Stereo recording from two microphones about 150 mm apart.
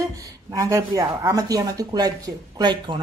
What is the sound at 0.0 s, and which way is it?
Speech, 25° right (ahead or behind).